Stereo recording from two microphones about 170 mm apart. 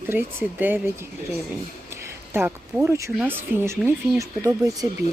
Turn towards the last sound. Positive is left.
turn(degrees=-20)  # may be behind; listen again after turning